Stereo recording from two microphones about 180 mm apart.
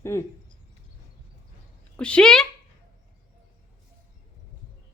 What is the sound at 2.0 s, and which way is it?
Speech, 5° left (ahead or behind).